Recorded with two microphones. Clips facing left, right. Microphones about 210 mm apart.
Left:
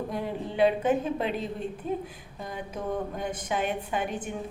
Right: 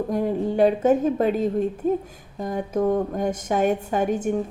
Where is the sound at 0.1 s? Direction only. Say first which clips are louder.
Right 9 dB; 45° right (ahead or behind).